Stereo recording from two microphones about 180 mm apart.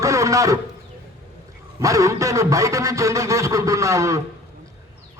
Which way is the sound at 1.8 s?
15° right (ahead or behind).